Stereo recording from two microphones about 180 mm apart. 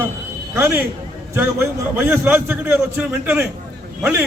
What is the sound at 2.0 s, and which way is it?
A man's voice, 10° right (ahead or behind).